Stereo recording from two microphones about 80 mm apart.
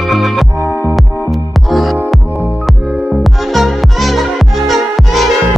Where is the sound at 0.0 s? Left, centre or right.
Centre.